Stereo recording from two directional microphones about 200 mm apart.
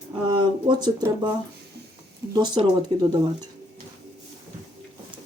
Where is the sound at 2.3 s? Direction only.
20° right (ahead or behind).